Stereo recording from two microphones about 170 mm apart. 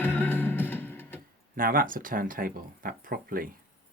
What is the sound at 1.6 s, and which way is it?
Speech, 55° right (ahead or behind).